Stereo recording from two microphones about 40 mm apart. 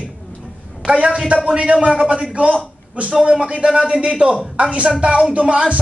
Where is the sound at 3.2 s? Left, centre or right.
Right.